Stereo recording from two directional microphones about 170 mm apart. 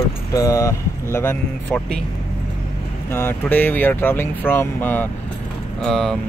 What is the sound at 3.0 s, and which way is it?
Speech, 15° left (ahead or behind).